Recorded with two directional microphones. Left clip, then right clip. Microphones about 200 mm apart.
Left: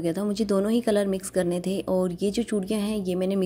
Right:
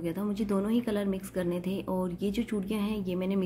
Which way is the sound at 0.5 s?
35° left (ahead or behind).